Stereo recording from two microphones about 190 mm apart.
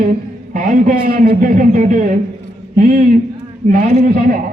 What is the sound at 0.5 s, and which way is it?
A man's voice, 45° right (ahead or behind).